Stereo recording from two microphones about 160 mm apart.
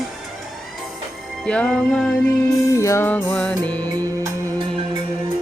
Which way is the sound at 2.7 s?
20° left (ahead or behind).